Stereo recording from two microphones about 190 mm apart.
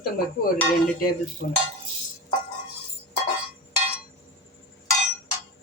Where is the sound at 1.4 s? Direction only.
60° left (ahead or behind).